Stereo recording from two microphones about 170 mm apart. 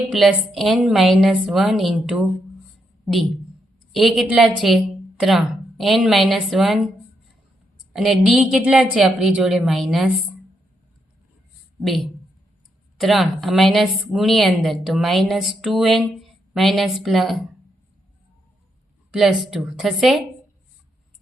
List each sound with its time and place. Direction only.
0.1 s a woman's voice: centre (ahead or behind)
7.9 s a woman's voice: centre (ahead or behind)
11.8 s a woman's voice: centre (ahead or behind)
19.1 s a woman's voice: 5° right (ahead or behind)